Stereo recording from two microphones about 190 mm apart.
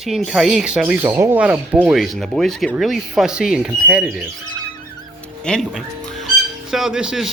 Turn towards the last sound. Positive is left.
turn(degrees=-5)  # may be behind; listen again after turning